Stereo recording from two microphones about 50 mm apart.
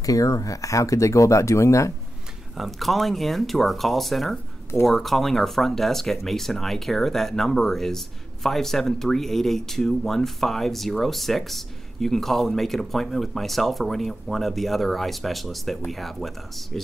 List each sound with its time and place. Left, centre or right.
0.3 s speech: left
2.5 s speech: centre